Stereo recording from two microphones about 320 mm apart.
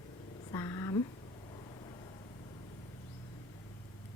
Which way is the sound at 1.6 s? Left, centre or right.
Centre.